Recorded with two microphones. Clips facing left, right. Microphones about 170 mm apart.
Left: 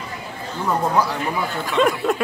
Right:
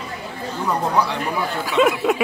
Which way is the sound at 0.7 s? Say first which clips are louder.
Left 1 dB; 5° left (ahead or behind).